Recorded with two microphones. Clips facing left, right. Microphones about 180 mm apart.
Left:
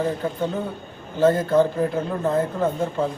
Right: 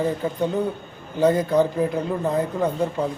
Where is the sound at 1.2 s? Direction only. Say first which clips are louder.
Left 1 dB; 15° right (ahead or behind).